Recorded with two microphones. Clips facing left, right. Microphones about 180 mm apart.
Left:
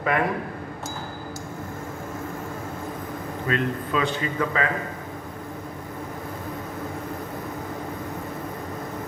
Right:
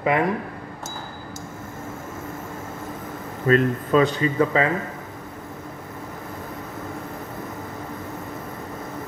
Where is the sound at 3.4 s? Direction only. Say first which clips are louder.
Right 7 dB; 40° right (ahead or behind).